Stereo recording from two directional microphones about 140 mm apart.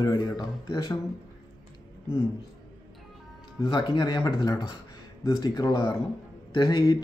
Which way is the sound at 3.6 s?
35° left (ahead or behind).